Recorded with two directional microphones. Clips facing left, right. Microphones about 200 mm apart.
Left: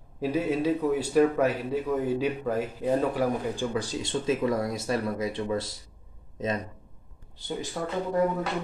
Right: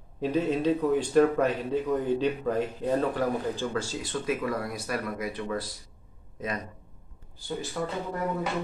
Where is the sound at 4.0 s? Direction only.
25° left (ahead or behind).